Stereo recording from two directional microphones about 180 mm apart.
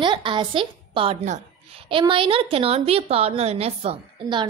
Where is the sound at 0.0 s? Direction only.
25° right (ahead or behind).